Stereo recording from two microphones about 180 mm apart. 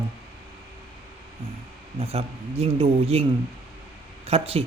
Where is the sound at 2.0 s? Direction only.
35° right (ahead or behind).